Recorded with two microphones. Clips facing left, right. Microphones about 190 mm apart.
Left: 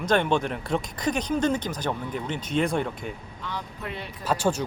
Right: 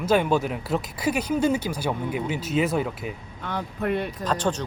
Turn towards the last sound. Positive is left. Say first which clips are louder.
# even
turn(degrees=10)  # may be behind; listen again after turning